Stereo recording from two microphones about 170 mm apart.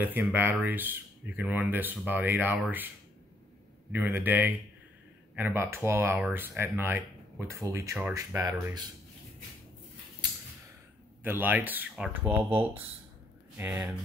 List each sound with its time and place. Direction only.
0.0 s speech: 10° right (ahead or behind)
3.9 s speech: 10° right (ahead or behind)
11.2 s speech: 10° right (ahead or behind)
13.6 s speech: 10° right (ahead or behind)